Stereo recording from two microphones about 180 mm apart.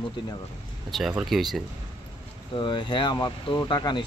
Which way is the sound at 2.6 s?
25° left (ahead or behind).